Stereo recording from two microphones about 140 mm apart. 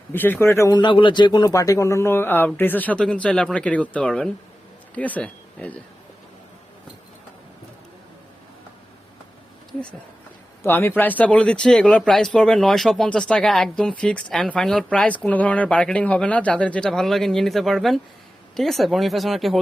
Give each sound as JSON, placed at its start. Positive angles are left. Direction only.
{"t": 0.1, "sound": "speech", "side_deg": 15}
{"t": 0.8, "sound": "speech", "side_deg": 35}
{"t": 10.6, "sound": "speech", "side_deg": 15}